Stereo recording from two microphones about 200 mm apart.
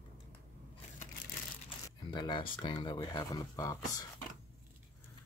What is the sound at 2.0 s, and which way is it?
Speech, 20° left (ahead or behind).